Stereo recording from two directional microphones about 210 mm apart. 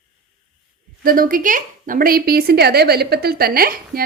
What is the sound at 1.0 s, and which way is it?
A woman's voice, 45° right (ahead or behind).